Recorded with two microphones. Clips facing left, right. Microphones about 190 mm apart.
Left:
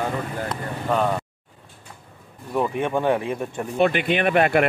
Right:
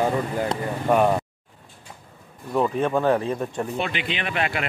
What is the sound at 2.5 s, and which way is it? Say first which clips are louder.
Speech: right 1 dB; 10° left (ahead or behind).